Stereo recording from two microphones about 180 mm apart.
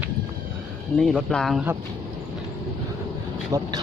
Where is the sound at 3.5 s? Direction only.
20° right (ahead or behind).